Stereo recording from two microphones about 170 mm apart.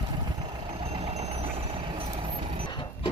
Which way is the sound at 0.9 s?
40° right (ahead or behind).